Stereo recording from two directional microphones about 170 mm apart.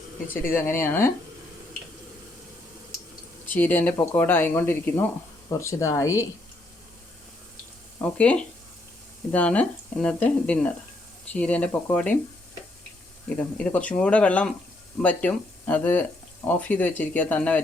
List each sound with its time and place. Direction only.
0.4 s speech: 15° left (ahead or behind)
3.4 s speech: 10° left (ahead or behind)
8.0 s speech: 5° left (ahead or behind)
13.2 s speech: 5° left (ahead or behind)